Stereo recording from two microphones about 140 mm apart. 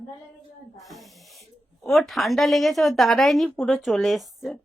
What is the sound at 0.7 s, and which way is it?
Snake, centre (ahead or behind).